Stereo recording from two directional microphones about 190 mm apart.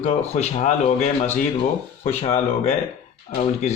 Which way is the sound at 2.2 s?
30° left (ahead or behind).